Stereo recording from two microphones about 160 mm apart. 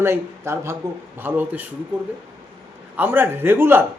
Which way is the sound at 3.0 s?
15° right (ahead or behind).